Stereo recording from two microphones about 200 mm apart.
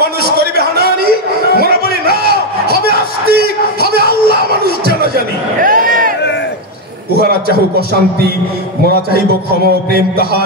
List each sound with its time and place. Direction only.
0.0 s a sound: 55° right (ahead or behind)
7.2 s a man's voice: 50° right (ahead or behind)
9.9 s a man's voice: 50° right (ahead or behind)